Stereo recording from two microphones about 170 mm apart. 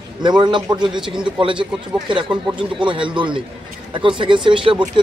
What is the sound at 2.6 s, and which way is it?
A man's voice, 30° right (ahead or behind).